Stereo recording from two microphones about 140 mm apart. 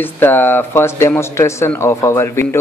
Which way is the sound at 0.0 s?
15° left (ahead or behind).